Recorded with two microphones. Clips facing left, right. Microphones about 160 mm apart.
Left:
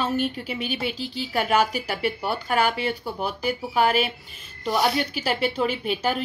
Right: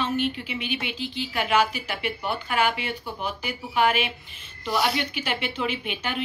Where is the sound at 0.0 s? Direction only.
40° left (ahead or behind).